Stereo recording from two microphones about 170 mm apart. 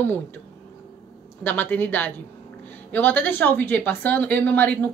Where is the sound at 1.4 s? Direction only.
10° left (ahead or behind).